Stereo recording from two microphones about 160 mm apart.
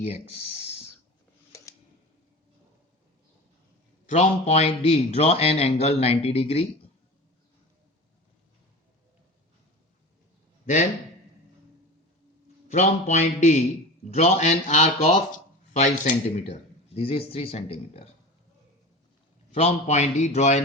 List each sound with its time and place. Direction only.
0.1 s speech: 40° left (ahead or behind)
4.0 s a man's voice: 45° left (ahead or behind)
12.6 s a man's voice: 45° left (ahead or behind)
19.5 s a man's voice: 45° left (ahead or behind)